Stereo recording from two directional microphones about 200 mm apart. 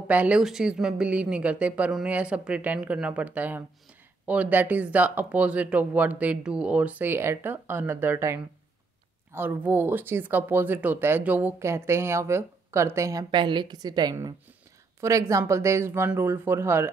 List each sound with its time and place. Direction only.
0.1 s speech: 5° right (ahead or behind)